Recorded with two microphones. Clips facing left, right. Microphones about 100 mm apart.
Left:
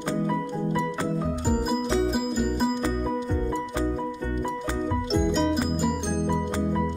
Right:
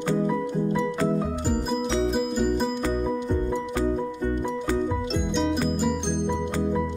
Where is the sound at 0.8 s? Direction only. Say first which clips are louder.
Right 3 dB; centre (ahead or behind).